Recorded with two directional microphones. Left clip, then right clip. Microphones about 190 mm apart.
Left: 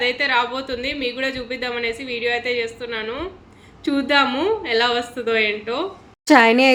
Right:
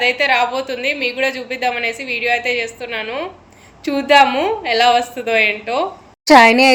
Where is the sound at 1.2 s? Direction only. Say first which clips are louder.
Right 5 dB; 50° right (ahead or behind).